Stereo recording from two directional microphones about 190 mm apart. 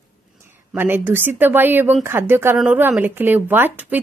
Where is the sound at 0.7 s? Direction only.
10° right (ahead or behind).